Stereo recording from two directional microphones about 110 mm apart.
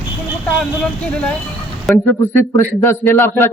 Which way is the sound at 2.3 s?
20° left (ahead or behind).